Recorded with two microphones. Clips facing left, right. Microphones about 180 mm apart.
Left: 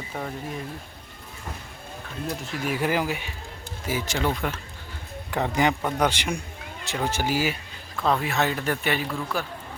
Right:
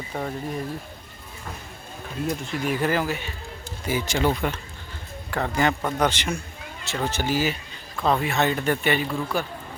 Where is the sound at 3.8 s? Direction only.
Centre (ahead or behind).